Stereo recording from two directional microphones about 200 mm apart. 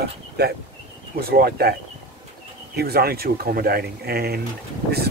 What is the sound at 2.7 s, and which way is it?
Speech, 50° right (ahead or behind).